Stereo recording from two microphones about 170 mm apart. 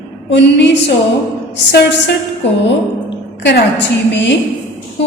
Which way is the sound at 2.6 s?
90° left.